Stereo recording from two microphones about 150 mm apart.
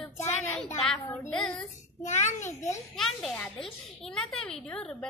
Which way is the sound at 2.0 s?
50° left (ahead or behind).